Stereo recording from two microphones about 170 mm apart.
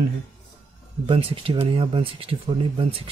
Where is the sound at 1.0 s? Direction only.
30° right (ahead or behind).